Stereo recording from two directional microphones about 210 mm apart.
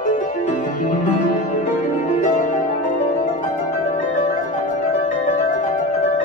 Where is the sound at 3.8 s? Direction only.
35° left (ahead or behind).